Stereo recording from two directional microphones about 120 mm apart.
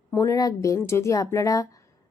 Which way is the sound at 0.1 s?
25° left (ahead or behind).